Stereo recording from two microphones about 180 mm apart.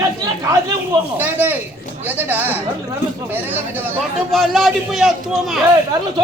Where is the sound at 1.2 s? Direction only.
10° right (ahead or behind).